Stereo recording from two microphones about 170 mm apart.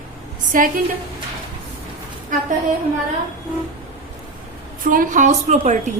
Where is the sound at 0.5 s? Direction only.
55° right (ahead or behind).